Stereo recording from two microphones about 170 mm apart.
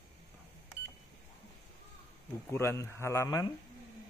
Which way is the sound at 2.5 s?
15° left (ahead or behind).